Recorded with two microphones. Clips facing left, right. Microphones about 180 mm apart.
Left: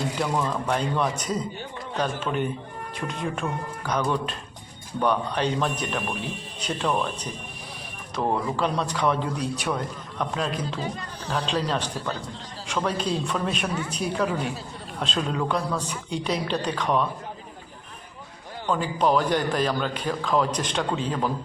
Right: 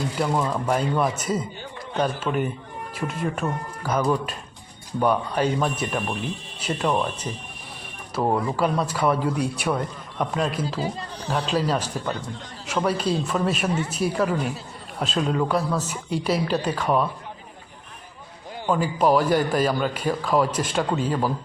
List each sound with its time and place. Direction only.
0.2 s a man's voice: 10° right (ahead or behind)
10.8 s speech: 30° right (ahead or behind)
11.3 s a man's voice: 5° right (ahead or behind)
18.6 s a man's voice: 10° right (ahead or behind)